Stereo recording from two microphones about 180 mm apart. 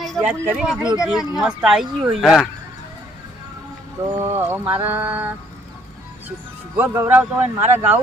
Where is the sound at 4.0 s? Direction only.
15° right (ahead or behind).